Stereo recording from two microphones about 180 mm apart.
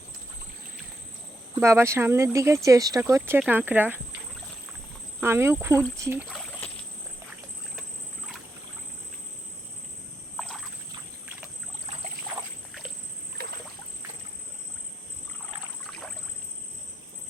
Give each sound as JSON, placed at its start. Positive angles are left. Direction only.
{"t": 1.5, "sound": "speech", "side_deg": -15}
{"t": 5.2, "sound": "speech", "side_deg": -15}
{"t": 6.2, "sound": "a sound", "side_deg": 0}
{"t": 10.3, "sound": "rowboat", "side_deg": 5}
{"t": 15.9, "sound": "rowboat", "side_deg": 5}